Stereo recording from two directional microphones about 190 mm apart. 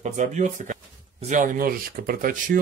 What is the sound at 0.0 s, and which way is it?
Speech, 40° right (ahead or behind).